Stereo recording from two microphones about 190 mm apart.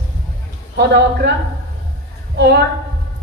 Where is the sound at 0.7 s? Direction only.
60° right (ahead or behind).